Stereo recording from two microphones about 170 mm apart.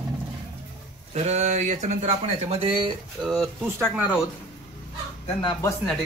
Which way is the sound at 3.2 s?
Centre (ahead or behind).